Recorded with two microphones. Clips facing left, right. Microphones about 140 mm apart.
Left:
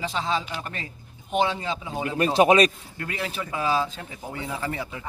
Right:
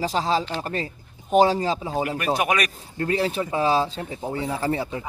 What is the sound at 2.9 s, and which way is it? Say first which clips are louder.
Speech: right 8 dB; 30° right (ahead or behind).